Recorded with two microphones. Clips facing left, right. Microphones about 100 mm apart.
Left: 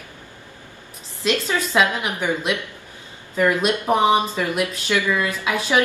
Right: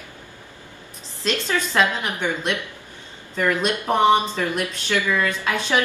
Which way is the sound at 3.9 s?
10° left (ahead or behind).